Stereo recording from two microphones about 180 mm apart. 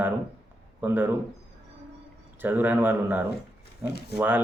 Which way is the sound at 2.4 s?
10° right (ahead or behind).